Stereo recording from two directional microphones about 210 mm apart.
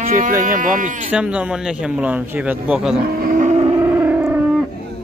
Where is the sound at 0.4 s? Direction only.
40° right (ahead or behind).